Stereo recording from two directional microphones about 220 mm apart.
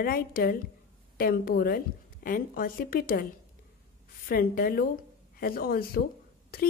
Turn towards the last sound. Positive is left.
turn(degrees=40)  # may be behind; listen again after turning